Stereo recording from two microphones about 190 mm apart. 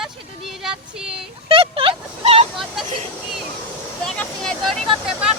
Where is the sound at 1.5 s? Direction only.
30° right (ahead or behind).